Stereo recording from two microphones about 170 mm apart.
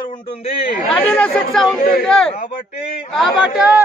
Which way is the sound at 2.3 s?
40° left (ahead or behind).